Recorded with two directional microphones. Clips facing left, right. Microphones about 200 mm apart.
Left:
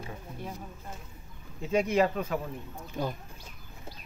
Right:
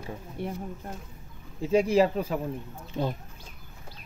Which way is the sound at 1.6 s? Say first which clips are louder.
Right 4 dB; 30° right (ahead or behind).